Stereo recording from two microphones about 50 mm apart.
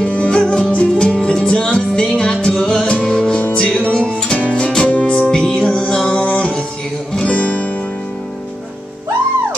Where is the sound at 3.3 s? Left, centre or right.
Left.